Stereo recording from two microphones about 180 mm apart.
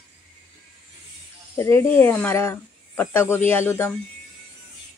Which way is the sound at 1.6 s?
15° left (ahead or behind).